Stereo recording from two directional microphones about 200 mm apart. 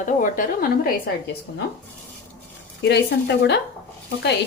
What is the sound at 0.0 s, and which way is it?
Speech, 40° left (ahead or behind).